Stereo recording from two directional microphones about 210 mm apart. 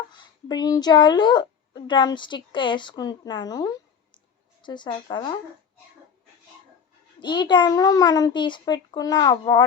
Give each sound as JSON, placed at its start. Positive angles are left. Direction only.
{"t": 0.1, "sound": "a woman's voice", "side_deg": 20}
{"t": 7.2, "sound": "a woman's voice", "side_deg": 20}